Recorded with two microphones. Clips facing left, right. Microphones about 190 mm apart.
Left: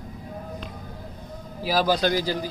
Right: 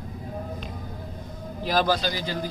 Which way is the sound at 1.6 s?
5° left (ahead or behind).